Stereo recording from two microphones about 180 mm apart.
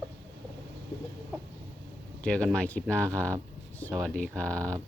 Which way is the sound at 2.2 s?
5° left (ahead or behind).